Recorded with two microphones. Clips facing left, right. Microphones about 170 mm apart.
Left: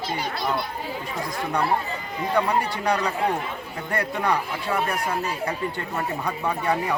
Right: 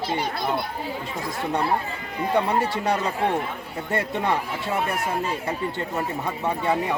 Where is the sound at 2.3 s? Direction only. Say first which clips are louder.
Right 1 dB; 25° right (ahead or behind).